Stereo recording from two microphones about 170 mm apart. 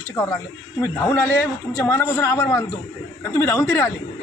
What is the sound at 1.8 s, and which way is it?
Speech, 15° left (ahead or behind).